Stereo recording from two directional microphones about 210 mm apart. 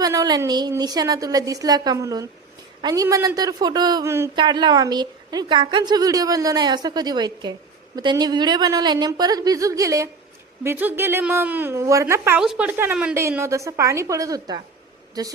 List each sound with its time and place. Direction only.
0.0 s a woman's voice: 15° right (ahead or behind)